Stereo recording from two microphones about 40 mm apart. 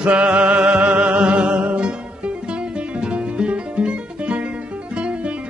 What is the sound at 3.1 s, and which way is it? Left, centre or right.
Music, right.